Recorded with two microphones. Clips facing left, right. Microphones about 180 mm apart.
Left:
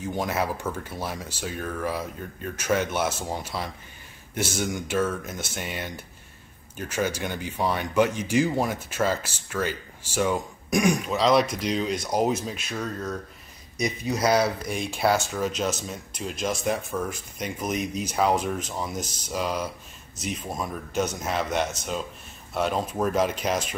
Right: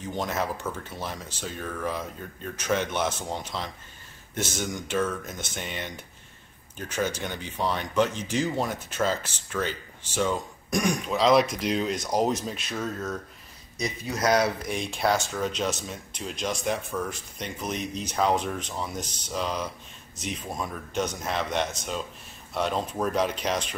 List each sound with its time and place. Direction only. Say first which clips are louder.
0.1 s speech: left 1 dB; 10° left (ahead or behind)
13.7 s speech: left 4 dB; 15° left (ahead or behind)